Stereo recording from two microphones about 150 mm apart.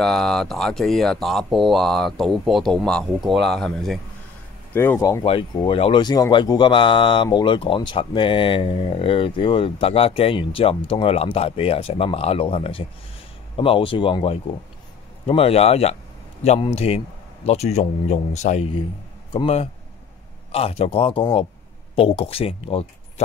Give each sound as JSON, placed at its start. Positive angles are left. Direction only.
{"t": 0.0, "sound": "speech", "side_deg": 5}
{"t": 4.7, "sound": "speech", "side_deg": 15}
{"t": 5.5, "sound": "a man's voice", "side_deg": 35}
{"t": 19.3, "sound": "speech", "side_deg": 40}